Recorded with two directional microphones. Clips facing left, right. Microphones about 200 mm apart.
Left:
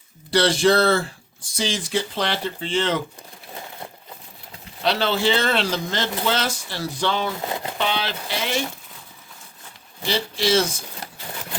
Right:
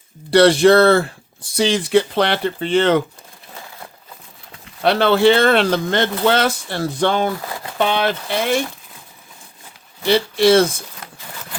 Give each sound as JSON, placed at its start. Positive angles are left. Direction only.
{"t": 0.3, "sound": "speech", "side_deg": -60}
{"t": 4.8, "sound": "speech", "side_deg": -55}
{"t": 7.3, "sound": "a sound", "side_deg": 20}
{"t": 7.8, "sound": "speech", "side_deg": -50}
{"t": 10.1, "sound": "speech", "side_deg": -60}